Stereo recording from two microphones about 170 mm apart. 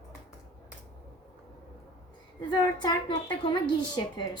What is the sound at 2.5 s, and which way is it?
A woman's voice, 25° left (ahead or behind).